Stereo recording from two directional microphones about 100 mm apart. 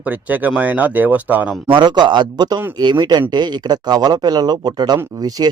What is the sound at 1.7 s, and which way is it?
Speech, 45° right (ahead or behind).